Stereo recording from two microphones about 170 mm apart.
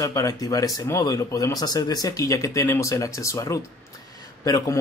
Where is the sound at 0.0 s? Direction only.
20° left (ahead or behind).